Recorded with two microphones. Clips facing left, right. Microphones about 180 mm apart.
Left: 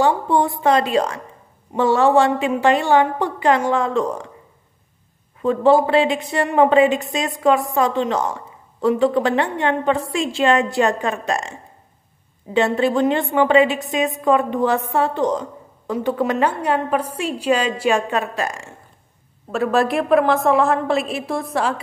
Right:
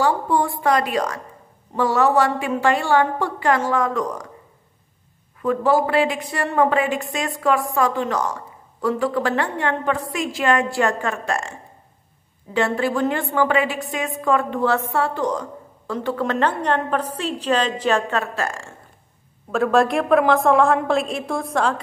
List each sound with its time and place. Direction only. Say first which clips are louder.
0.0 s a woman's voice: left 2 dB; 25° left (ahead or behind)
5.4 s a woman's voice: left 4 dB; 25° left (ahead or behind)
12.5 s a woman's voice: left 3 dB; 20° left (ahead or behind)
19.5 s a woman's voice: right 1 dB; centre (ahead or behind)